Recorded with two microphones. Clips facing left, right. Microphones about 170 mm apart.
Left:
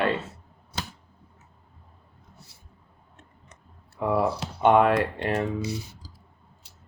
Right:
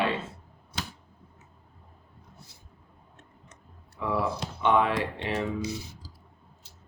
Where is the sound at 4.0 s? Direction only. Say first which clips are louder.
Left 4 dB; 45° left (ahead or behind).